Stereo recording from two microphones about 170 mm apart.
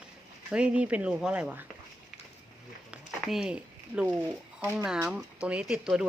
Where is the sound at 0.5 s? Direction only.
5° right (ahead or behind).